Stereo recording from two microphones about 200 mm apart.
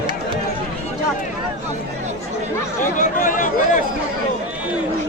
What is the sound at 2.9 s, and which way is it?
Chatter, 40° left (ahead or behind).